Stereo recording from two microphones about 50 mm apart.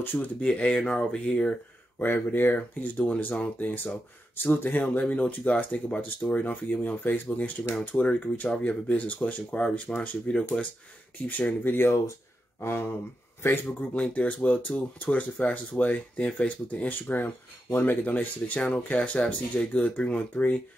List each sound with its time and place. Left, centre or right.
0.0 s speech: left
0.4 s speech: left
2.0 s speech: left
4.8 s speech: left
11.2 s speech: left
13.4 s speech: left
14.1 s speech: left
20.3 s speech: left